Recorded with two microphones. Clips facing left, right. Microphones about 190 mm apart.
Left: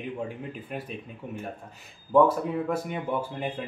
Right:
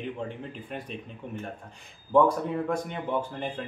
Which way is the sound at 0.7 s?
5° left (ahead or behind).